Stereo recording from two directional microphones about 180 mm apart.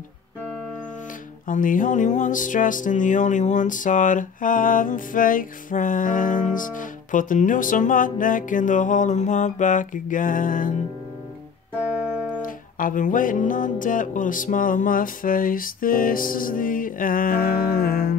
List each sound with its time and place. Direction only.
1.5 s music: 45° left (ahead or behind)
12.4 s music: 50° left (ahead or behind)